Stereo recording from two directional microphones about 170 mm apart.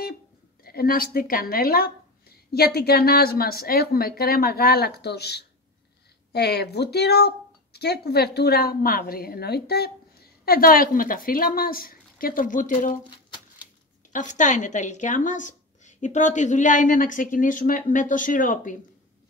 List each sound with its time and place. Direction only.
0.7 s speech: 60° left (ahead or behind)
14.1 s a woman's voice: 45° left (ahead or behind)